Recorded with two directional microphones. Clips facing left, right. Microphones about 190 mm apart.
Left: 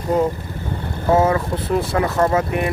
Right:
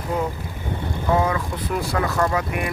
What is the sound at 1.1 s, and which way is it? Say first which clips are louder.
Speech: left 6 dB; 30° left (ahead or behind).